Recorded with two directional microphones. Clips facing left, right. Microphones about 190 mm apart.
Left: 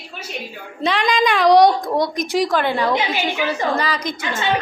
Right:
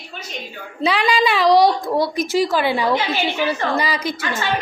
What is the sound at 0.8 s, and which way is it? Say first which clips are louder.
A child's voice: even; 5° right (ahead or behind).